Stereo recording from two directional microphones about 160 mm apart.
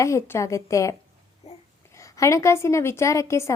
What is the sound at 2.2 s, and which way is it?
A woman's voice, 20° left (ahead or behind).